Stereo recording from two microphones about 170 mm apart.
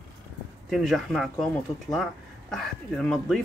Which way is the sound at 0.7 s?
Centre (ahead or behind).